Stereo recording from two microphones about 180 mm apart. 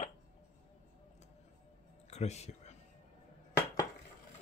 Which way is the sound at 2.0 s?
40° left (ahead or behind).